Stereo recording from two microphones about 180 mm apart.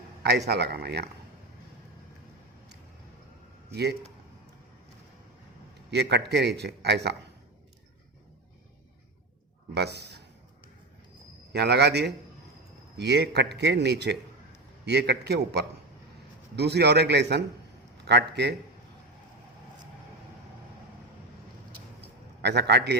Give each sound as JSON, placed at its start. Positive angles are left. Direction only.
{"t": 0.2, "sound": "speech", "side_deg": -65}
{"t": 3.7, "sound": "speech", "side_deg": -65}
{"t": 5.9, "sound": "a man's voice", "side_deg": -70}
{"t": 9.7, "sound": "a man's voice", "side_deg": -65}
{"t": 11.5, "sound": "a man's voice", "side_deg": -65}
{"t": 22.4, "sound": "a man's voice", "side_deg": -70}